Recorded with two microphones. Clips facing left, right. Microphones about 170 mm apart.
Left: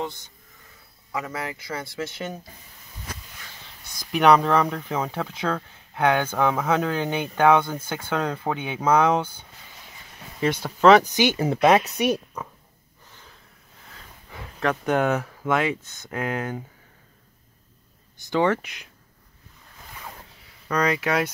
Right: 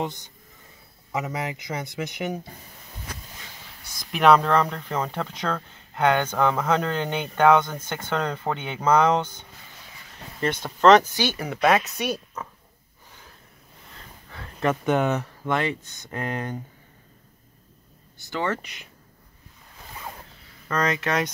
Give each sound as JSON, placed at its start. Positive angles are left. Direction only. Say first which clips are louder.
{"t": 0.0, "sound": "speech", "louder": "right 1 dB", "side_deg": -20}
{"t": 3.9, "sound": "speech", "louder": "even", "side_deg": 0}
{"t": 11.1, "sound": "speech", "louder": "left 5 dB", "side_deg": 20}
{"t": 12.0, "sound": "a woman's voice", "louder": "left 5 dB", "side_deg": 15}
{"t": 14.6, "sound": "speech", "louder": "even", "side_deg": 0}
{"t": 15.8, "sound": "speech", "louder": "left 1 dB", "side_deg": -15}
{"t": 16.1, "sound": "speech", "louder": "left 2 dB", "side_deg": 5}
{"t": 18.1, "sound": "speech", "louder": "left 6 dB", "side_deg": 15}
{"t": 20.6, "sound": "speech", "louder": "left 2 dB", "side_deg": 10}